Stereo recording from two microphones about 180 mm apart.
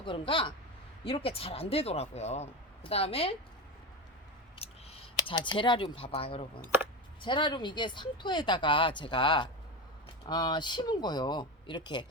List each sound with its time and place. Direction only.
0.0 s speech: 30° left (ahead or behind)
4.6 s speech: 35° left (ahead or behind)